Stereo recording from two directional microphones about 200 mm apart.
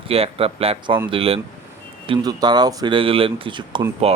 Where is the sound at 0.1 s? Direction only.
30° right (ahead or behind).